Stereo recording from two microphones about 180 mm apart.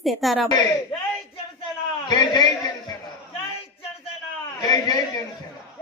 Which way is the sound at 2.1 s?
25° left (ahead or behind).